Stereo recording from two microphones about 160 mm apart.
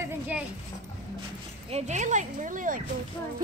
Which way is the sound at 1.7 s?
45° right (ahead or behind).